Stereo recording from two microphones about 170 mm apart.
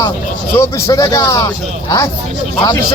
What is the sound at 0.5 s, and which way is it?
Speech, 15° left (ahead or behind).